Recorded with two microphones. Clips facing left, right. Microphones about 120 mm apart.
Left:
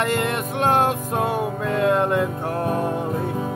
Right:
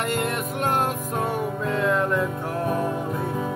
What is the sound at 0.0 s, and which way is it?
Music, 80° left.